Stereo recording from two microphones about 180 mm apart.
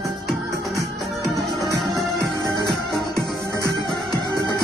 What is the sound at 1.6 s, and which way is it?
Music, centre (ahead or behind).